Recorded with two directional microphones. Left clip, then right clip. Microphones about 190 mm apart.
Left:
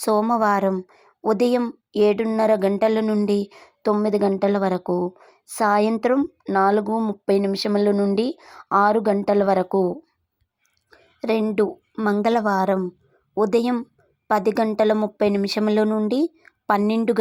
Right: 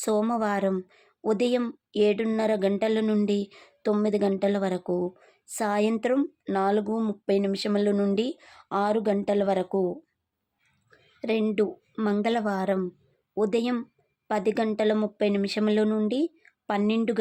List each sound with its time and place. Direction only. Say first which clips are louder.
0.0 s a woman's voice: left 7 dB; 15° left (ahead or behind)